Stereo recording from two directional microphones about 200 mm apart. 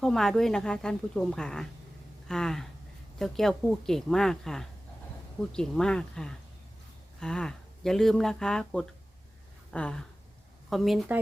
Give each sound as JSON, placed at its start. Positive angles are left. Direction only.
{"t": 0.0, "sound": "speech", "side_deg": 0}